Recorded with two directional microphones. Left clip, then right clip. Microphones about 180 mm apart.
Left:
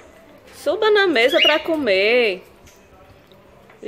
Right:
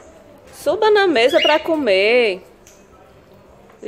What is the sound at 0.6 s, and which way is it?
Speech, centre (ahead or behind).